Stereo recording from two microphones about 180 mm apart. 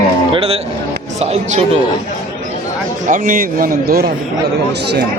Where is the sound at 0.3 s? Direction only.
35° right (ahead or behind).